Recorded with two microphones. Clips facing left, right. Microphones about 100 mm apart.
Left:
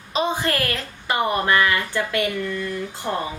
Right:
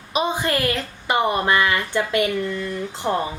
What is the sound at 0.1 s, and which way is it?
A woman's voice, 15° right (ahead or behind).